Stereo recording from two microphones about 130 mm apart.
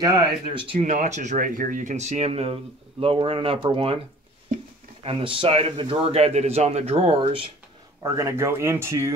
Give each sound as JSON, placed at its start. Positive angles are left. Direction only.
{"t": 0.0, "sound": "speech", "side_deg": -35}
{"t": 0.8, "sound": "speech", "side_deg": -65}
{"t": 5.0, "sound": "speech", "side_deg": -40}
{"t": 8.0, "sound": "speech", "side_deg": -25}